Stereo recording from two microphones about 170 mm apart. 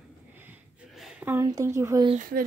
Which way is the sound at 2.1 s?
55° right (ahead or behind).